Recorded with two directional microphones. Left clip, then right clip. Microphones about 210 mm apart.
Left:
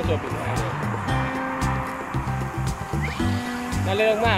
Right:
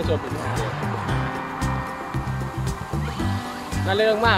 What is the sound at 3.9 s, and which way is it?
Speech, 30° right (ahead or behind).